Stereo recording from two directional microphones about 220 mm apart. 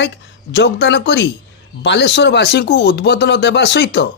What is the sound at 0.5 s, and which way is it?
Speech, 50° left (ahead or behind).